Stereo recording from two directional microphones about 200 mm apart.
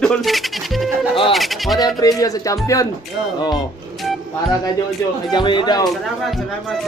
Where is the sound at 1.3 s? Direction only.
Centre (ahead or behind).